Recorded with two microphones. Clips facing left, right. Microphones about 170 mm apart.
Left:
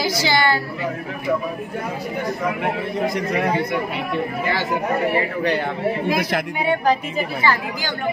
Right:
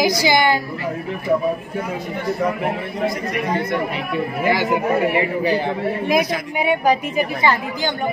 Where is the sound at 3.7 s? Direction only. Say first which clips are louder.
Right 1 dB; centre (ahead or behind).